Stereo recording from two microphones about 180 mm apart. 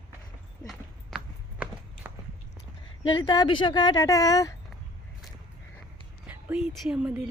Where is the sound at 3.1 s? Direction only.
25° left (ahead or behind).